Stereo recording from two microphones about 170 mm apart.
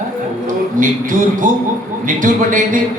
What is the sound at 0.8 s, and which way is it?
Speech, 50° right (ahead or behind).